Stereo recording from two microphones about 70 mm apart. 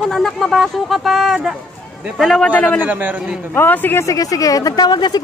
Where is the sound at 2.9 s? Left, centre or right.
Right.